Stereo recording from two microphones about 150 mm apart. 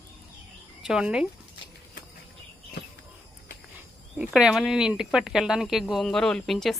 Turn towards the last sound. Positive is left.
turn(degrees=0)  # may be behind; listen again after turning